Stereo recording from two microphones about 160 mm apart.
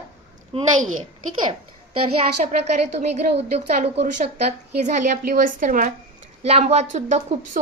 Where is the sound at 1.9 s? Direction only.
40° right (ahead or behind).